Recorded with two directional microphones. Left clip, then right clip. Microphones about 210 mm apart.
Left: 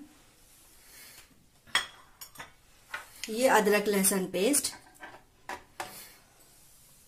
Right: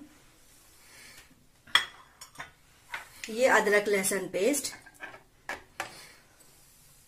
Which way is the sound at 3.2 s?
55° left (ahead or behind).